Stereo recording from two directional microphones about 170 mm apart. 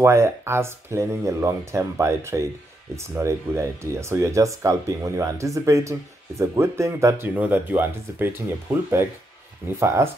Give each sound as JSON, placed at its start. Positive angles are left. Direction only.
{"t": 0.0, "sound": "speech", "side_deg": -15}
{"t": 9.7, "sound": "speech", "side_deg": -15}